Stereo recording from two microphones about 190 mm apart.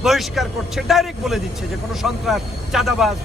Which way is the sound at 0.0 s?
Centre (ahead or behind).